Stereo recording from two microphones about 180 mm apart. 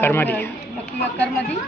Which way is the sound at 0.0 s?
10° left (ahead or behind).